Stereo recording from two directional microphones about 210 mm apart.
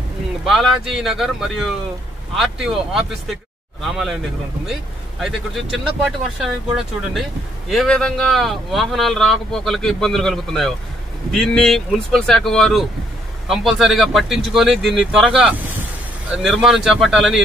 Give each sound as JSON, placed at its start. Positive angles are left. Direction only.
{"t": 0.5, "sound": "speech", "side_deg": 0}
{"t": 5.2, "sound": "speech", "side_deg": 0}